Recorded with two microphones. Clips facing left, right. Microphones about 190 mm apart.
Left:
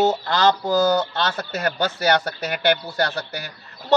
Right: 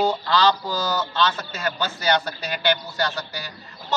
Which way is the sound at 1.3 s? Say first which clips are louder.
Left 3 dB; 65° left (ahead or behind).